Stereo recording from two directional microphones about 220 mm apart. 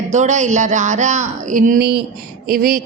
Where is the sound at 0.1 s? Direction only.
35° right (ahead or behind).